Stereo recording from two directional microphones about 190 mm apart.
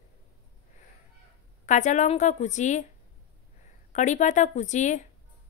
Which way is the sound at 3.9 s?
40° left (ahead or behind).